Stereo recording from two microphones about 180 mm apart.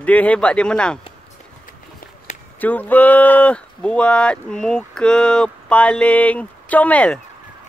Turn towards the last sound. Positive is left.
turn(degrees=5)  # may be behind; listen again after turning